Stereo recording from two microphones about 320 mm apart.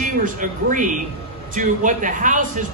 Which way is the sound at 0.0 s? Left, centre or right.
Right.